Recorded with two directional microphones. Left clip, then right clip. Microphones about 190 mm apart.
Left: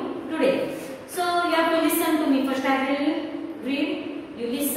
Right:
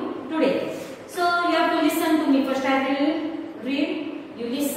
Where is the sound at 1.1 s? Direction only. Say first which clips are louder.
Right 2 dB; 15° left (ahead or behind).